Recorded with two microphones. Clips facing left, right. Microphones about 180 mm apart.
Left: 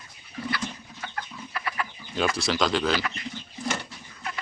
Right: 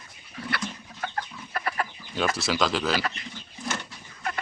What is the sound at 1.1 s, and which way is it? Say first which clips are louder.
Chicken: left 1 dB; 40° right (ahead or behind).